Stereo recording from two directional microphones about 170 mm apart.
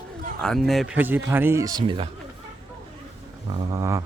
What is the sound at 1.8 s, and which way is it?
Speech, 30° right (ahead or behind).